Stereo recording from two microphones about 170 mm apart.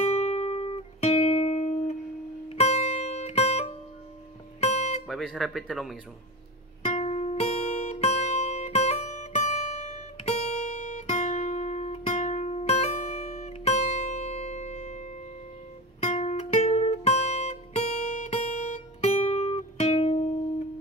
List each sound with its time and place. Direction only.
0.1 s music: 40° left (ahead or behind)
4.6 s guitar: 40° left (ahead or behind)
5.0 s speech: centre (ahead or behind)
6.8 s music: 40° left (ahead or behind)
10.9 s guitar: 40° left (ahead or behind)
16.0 s music: 40° left (ahead or behind)